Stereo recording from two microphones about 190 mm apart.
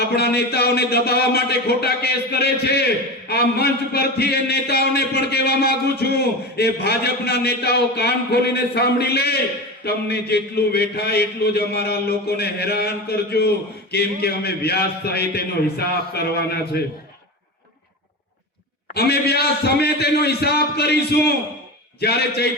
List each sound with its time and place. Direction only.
0.0 s a man's voice: 55° left (ahead or behind)
18.9 s a man's voice: 55° left (ahead or behind)